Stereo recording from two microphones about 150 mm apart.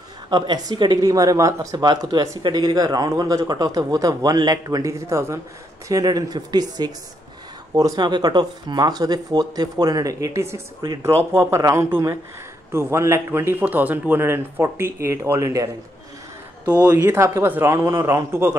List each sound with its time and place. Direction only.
0.3 s speech: 30° right (ahead or behind)
16.6 s speech: 10° right (ahead or behind)